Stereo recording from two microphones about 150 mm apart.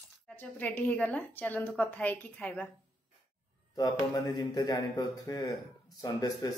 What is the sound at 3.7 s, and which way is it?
Speech, 30° left (ahead or behind).